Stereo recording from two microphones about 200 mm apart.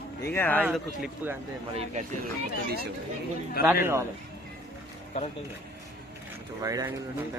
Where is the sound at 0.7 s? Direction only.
5° right (ahead or behind).